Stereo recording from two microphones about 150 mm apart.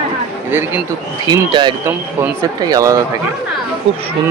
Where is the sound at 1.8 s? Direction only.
15° right (ahead or behind).